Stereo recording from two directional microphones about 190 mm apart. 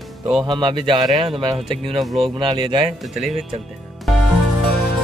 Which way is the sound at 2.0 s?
Centre (ahead or behind).